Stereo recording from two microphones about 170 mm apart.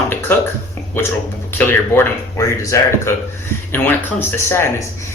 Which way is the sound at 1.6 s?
10° left (ahead or behind).